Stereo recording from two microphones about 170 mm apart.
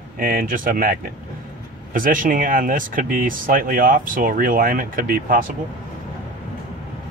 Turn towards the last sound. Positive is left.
turn(degrees=-60)  # may be behind; listen again after turning